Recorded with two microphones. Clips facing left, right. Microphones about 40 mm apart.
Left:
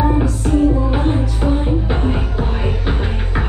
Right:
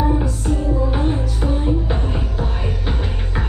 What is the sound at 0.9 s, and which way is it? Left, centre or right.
Music, left.